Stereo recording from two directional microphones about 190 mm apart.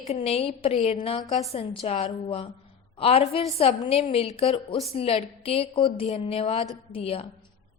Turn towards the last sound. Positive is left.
turn(degrees=30)  # may be behind; listen again after turning